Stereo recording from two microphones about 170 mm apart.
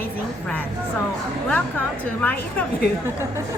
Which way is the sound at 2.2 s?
10° left (ahead or behind).